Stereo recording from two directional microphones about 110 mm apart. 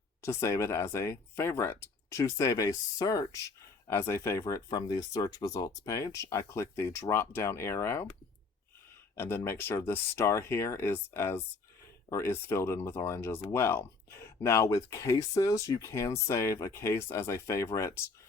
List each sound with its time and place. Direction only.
0.2 s speech: 25° left (ahead or behind)
9.1 s speech: 20° left (ahead or behind)